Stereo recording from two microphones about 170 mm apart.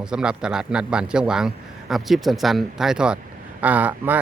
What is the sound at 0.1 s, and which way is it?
Speech, 5° right (ahead or behind).